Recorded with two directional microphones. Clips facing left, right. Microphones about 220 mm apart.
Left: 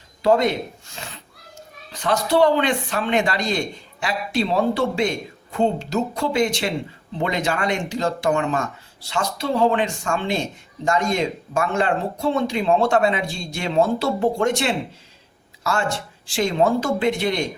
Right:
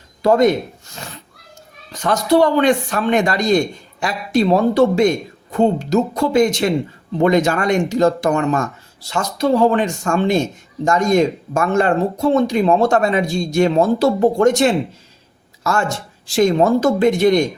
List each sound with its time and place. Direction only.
0.2 s speech: 45° right (ahead or behind)
1.9 s speech: 45° right (ahead or behind)